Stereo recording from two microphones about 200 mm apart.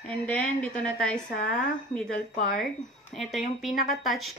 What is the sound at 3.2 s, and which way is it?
Speech, centre (ahead or behind).